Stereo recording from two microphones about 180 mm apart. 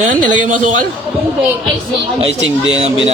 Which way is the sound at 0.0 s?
45° right (ahead or behind).